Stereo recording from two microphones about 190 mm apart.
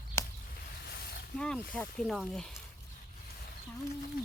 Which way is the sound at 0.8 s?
60° left (ahead or behind).